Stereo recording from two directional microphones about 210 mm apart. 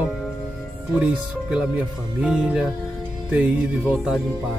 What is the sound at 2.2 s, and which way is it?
Speech, 5° right (ahead or behind).